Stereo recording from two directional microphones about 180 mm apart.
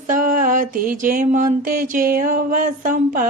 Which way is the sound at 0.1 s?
50° right (ahead or behind).